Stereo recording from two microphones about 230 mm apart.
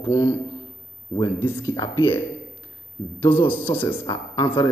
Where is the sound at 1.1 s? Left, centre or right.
Left.